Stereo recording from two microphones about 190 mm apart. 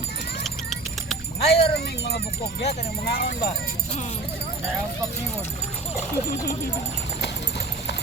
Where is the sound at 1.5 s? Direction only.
60° left (ahead or behind).